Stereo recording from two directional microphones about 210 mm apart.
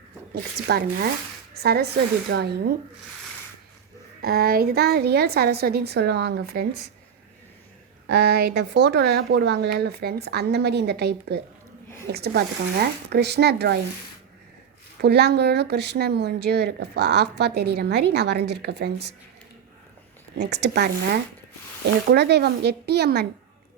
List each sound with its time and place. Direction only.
0.7 s speech: 45° right (ahead or behind)
4.2 s speech: 45° right (ahead or behind)
8.0 s speech: 50° right (ahead or behind)
14.9 s speech: 50° right (ahead or behind)
20.3 s speech: 50° right (ahead or behind)